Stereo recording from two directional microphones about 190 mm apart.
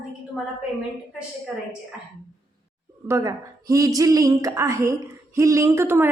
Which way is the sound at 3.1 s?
15° right (ahead or behind).